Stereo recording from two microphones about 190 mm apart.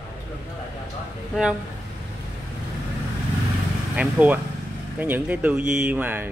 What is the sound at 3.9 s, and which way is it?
Speech, 5° right (ahead or behind).